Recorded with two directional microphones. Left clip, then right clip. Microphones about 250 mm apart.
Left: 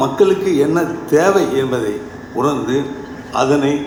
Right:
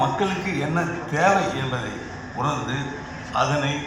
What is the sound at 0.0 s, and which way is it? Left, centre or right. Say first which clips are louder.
A man's voice: left 9 dB; left.